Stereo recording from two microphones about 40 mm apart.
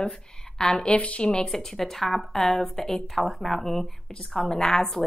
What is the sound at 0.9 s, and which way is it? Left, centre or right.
Speech, left.